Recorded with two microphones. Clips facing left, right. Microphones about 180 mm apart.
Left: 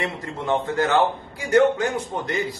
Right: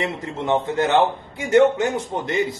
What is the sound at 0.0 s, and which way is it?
A man's voice, 20° right (ahead or behind).